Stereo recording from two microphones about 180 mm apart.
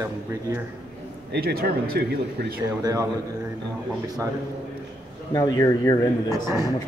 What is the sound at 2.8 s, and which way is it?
Speech, 20° right (ahead or behind).